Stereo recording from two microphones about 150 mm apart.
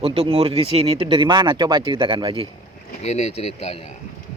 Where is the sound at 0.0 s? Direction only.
40° right (ahead or behind).